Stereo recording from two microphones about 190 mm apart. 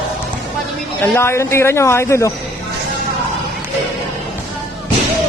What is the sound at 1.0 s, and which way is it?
Speech, 15° left (ahead or behind).